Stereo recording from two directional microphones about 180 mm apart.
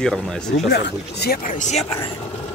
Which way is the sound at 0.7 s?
65° left (ahead or behind).